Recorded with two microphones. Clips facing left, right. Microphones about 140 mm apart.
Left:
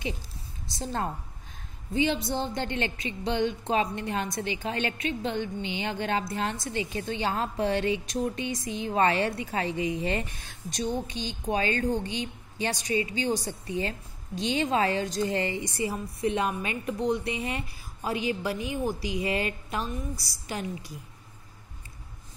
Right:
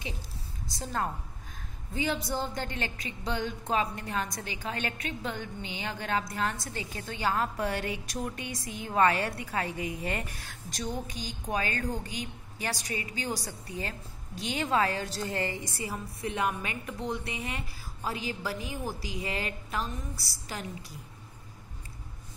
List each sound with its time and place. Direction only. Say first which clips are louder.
2.0 s a woman's voice: left 4 dB; 25° left (ahead or behind)